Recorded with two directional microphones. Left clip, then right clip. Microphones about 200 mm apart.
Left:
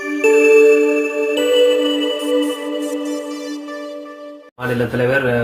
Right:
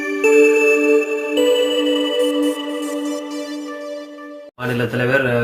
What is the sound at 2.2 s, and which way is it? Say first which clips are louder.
Music: even; centre (ahead or behind).